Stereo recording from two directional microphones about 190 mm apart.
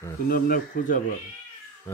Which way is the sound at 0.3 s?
45° left (ahead or behind).